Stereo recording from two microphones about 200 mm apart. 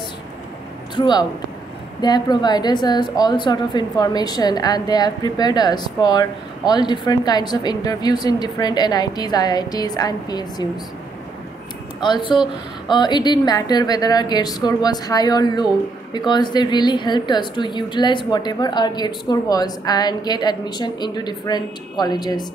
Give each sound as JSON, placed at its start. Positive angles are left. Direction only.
{"t": 0.9, "sound": "a woman's voice", "side_deg": 20}
{"t": 12.0, "sound": "a woman's voice", "side_deg": 25}